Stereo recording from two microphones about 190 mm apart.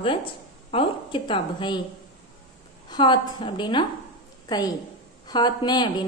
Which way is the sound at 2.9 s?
25° left (ahead or behind).